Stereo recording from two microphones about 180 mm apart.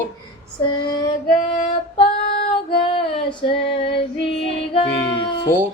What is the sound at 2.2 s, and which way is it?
Child singing, 60° left (ahead or behind).